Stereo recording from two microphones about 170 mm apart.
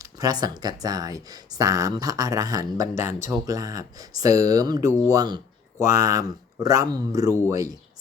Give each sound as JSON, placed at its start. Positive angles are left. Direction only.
{"t": 0.0, "sound": "speech", "side_deg": -20}